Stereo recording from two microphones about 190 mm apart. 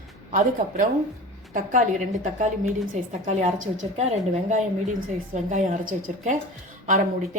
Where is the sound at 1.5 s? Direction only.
45° right (ahead or behind).